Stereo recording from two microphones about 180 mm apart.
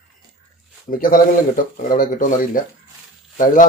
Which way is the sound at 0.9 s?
50° left (ahead or behind).